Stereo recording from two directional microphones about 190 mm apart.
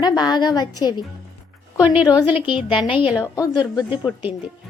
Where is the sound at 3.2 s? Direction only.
20° left (ahead or behind).